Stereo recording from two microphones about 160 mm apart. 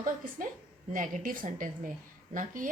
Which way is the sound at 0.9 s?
60° right (ahead or behind).